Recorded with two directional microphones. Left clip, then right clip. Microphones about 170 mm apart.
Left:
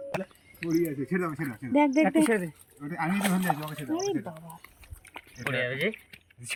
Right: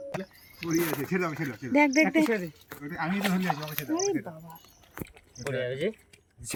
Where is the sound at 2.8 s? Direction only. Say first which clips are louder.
Left 1 dB; 25° left (ahead or behind).